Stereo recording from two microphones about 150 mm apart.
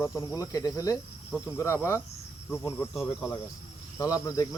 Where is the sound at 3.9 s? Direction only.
20° left (ahead or behind).